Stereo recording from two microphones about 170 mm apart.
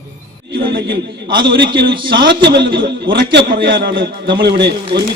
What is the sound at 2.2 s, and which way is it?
A man's voice, 75° right (ahead or behind).